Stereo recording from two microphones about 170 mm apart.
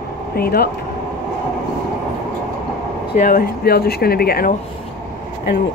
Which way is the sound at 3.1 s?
50° left (ahead or behind).